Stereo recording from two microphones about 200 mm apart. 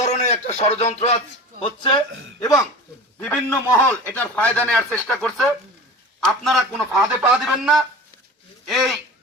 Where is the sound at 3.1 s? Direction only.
15° left (ahead or behind).